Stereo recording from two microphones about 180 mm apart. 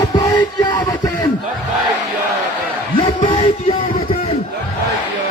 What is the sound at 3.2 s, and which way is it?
Music, 30° left (ahead or behind).